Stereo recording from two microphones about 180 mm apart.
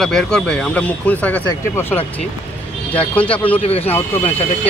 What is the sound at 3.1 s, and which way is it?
Speech, 10° left (ahead or behind).